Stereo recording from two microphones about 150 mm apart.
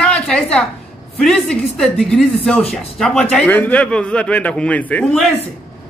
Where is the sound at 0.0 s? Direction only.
5° left (ahead or behind).